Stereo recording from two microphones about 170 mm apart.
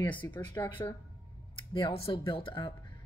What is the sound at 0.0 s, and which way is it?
Speech, 10° left (ahead or behind).